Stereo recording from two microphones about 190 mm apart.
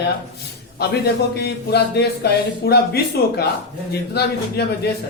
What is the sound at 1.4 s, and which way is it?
A man's voice, 60° left (ahead or behind).